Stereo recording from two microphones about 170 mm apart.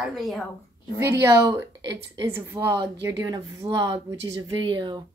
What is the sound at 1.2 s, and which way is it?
Speech, 20° right (ahead or behind).